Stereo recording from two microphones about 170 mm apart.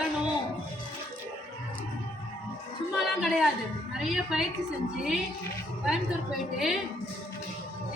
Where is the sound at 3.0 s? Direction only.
Centre (ahead or behind).